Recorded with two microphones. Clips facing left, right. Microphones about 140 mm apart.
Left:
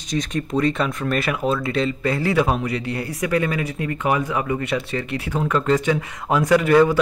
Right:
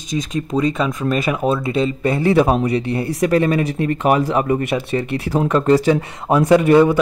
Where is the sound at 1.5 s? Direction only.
25° right (ahead or behind).